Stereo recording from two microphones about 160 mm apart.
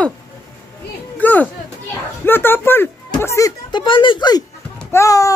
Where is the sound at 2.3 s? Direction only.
15° left (ahead or behind); by 4.4 s 30° left (ahead or behind).